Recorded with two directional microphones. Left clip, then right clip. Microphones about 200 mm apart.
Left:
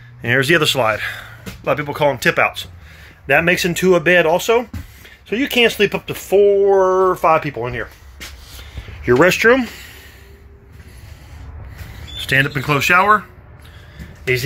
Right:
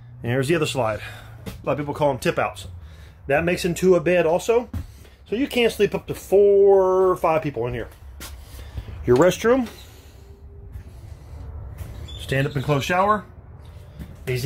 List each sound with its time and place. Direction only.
0.2 s speech: 5° right (ahead or behind)
8.5 s a sound: 10° right (ahead or behind)
9.1 s speech: 10° right (ahead or behind)
12.2 s speech: 15° right (ahead or behind)